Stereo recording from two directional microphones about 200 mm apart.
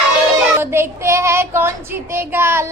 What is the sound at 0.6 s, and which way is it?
Child singing, 10° right (ahead or behind).